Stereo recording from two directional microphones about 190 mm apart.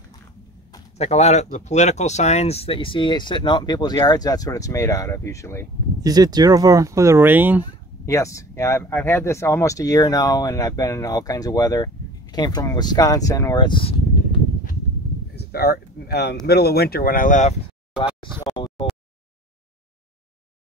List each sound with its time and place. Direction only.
0.7 s speech: 35° left (ahead or behind); by 5.7 s 15° left (ahead or behind)
6.0 s speech: 20° right (ahead or behind)
8.0 s speech: 15° left (ahead or behind)
15.3 s a sound: 55° left (ahead or behind)
16.4 s speech: 55° left (ahead or behind); by 18.0 s 35° left (ahead or behind)
18.4 s a sound: 25° left (ahead or behind)